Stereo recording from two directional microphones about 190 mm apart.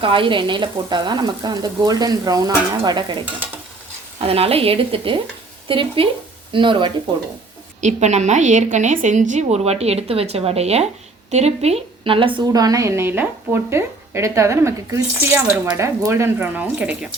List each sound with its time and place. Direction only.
0.0 s frying: 25° right (ahead or behind)
7.8 s a woman's voice: 40° right (ahead or behind); by 17.1 s 5° right (ahead or behind)